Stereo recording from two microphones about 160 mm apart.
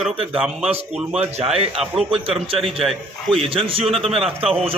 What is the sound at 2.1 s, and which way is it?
Speech, 35° right (ahead or behind).